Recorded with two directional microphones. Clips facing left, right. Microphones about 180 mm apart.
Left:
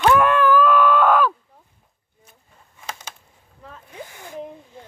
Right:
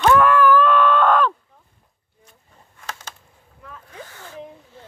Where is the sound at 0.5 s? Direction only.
5° left (ahead or behind).